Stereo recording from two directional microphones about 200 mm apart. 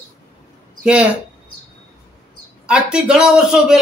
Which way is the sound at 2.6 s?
5° right (ahead or behind).